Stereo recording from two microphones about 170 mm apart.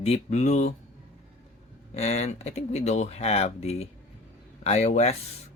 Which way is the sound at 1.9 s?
40° left (ahead or behind).